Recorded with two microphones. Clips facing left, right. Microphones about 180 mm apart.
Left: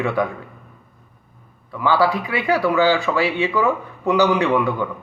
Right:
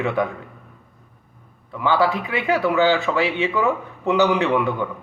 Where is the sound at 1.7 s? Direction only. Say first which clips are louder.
Left 1 dB; 20° right (ahead or behind).